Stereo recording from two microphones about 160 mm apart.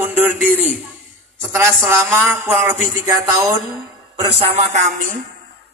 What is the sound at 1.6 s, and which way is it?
A man's voice, 15° right (ahead or behind).